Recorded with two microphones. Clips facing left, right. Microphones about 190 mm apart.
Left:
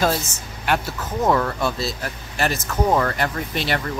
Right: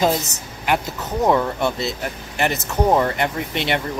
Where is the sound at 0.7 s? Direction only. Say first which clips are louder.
Right 1 dB; 20° right (ahead or behind).